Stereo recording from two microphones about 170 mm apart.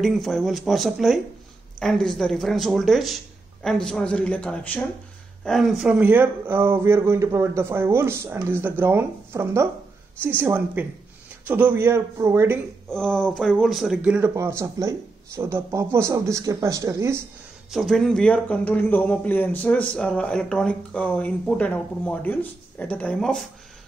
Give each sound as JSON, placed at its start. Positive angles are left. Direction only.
{"t": 0.0, "sound": "speech", "side_deg": 0}
{"t": 12.9, "sound": "speech", "side_deg": 5}
{"t": 17.6, "sound": "a man's voice", "side_deg": 0}